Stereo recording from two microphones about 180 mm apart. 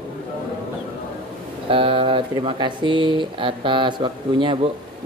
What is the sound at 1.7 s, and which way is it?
Speech, 30° right (ahead or behind).